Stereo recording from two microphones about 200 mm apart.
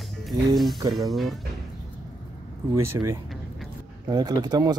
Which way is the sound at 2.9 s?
15° right (ahead or behind).